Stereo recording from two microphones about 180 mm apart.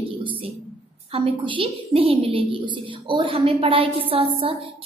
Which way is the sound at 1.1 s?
30° right (ahead or behind).